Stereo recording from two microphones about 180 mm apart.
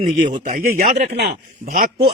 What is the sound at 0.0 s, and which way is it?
Speech, 40° right (ahead or behind).